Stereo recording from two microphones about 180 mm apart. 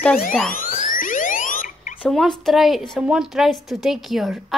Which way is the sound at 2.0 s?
Centre (ahead or behind).